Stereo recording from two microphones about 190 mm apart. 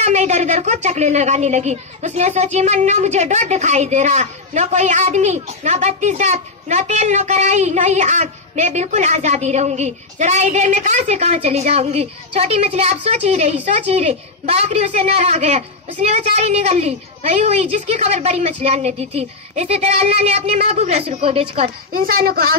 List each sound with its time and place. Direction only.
0.0 s speech: 35° right (ahead or behind)
21.9 s a woman's voice: 50° right (ahead or behind)